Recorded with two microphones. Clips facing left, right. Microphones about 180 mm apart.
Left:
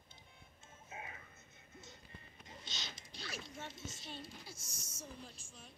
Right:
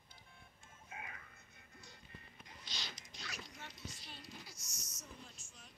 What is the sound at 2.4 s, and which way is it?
Zipper, 25° left (ahead or behind).